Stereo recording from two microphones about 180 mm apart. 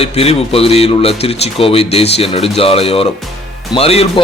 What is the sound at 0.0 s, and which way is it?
A man's voice, 35° left (ahead or behind).